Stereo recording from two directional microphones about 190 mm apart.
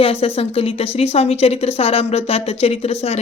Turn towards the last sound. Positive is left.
turn(degrees=35)  # may be behind; listen again after turning